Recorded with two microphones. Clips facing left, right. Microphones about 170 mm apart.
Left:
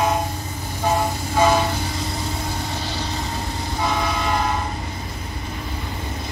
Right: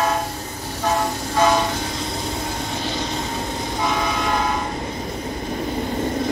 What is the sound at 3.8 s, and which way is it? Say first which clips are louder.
Train: even; centre (ahead or behind).